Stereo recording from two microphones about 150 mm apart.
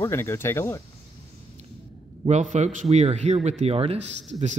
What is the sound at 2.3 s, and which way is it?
Speech, 50° right (ahead or behind).